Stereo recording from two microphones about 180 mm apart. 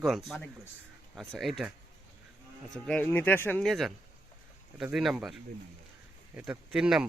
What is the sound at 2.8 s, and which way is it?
Speech, 5° left (ahead or behind).